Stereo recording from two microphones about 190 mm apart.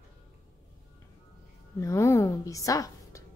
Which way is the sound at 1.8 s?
15° left (ahead or behind).